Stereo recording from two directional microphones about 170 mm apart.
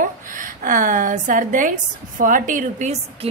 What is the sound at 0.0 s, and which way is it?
A woman's voice, 50° right (ahead or behind).